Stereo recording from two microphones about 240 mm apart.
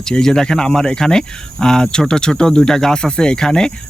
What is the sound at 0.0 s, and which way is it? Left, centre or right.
Speech, centre.